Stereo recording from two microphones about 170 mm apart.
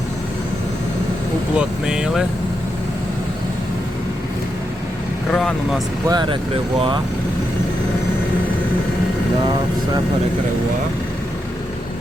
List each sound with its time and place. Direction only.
1.5 s speech: 5° right (ahead or behind)
5.3 s speech: 5° left (ahead or behind)
6.1 s speech: 25° right (ahead or behind)